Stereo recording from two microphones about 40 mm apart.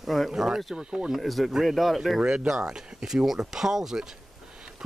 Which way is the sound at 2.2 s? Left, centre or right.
Centre.